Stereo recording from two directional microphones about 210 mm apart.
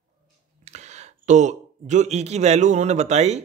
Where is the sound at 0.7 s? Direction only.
35° right (ahead or behind).